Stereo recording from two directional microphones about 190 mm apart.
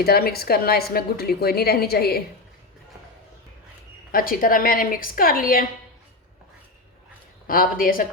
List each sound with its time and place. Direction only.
0.0 s a woman's voice: 55° left (ahead or behind)
4.1 s a woman's voice: 50° left (ahead or behind)
7.4 s a woman's voice: 50° left (ahead or behind)